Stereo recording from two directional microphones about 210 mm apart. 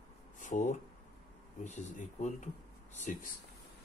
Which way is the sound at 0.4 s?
35° left (ahead or behind).